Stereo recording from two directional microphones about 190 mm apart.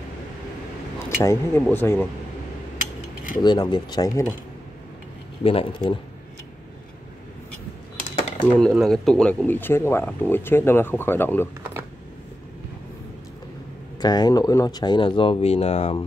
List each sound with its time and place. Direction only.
0.9 s speech: 15° left (ahead or behind)
3.4 s speech: 20° left (ahead or behind)
5.4 s speech: 30° left (ahead or behind)
8.5 s speech: centre (ahead or behind)
14.0 s speech: 20° left (ahead or behind)